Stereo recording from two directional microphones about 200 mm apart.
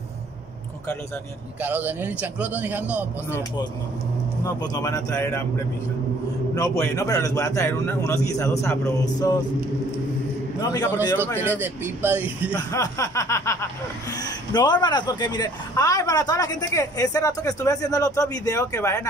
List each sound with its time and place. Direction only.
1.6 s a man's voice: 10° right (ahead or behind)
4.6 s a woman's voice: 20° left (ahead or behind)
6.5 s a woman's voice: 15° left (ahead or behind)
10.6 s a woman's voice: 15° left (ahead or behind)
11.3 s a man's voice: 10° right (ahead or behind)
12.7 s a woman's voice: 15° left (ahead or behind)